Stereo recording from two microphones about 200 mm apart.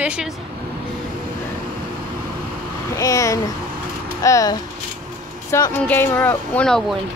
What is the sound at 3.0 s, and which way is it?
Speech, 15° left (ahead or behind).